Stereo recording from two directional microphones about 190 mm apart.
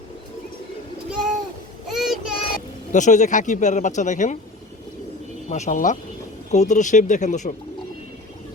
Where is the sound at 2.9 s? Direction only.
40° left (ahead or behind).